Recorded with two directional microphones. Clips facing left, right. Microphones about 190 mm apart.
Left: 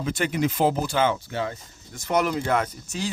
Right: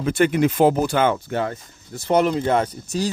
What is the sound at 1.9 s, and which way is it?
A man's voice, 30° right (ahead or behind).